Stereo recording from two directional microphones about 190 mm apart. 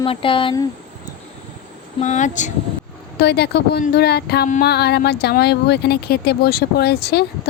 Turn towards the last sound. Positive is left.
turn(degrees=60)  # may be behind; listen again after turning